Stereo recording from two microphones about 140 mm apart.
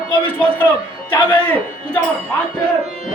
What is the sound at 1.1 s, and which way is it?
Speech, 30° left (ahead or behind).